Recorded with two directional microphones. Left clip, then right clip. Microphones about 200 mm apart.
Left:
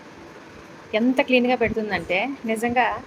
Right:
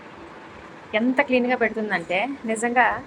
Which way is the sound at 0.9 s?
20° left (ahead or behind).